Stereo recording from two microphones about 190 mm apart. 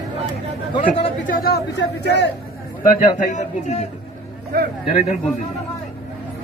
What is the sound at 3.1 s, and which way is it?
Speech, 40° left (ahead or behind).